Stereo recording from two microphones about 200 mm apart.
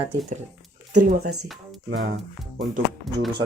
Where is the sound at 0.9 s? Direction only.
50° right (ahead or behind).